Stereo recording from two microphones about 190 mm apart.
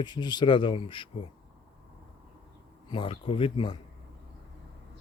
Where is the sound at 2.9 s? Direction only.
30° left (ahead or behind).